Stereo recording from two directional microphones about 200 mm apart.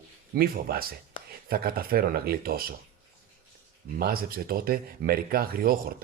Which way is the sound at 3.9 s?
50° right (ahead or behind).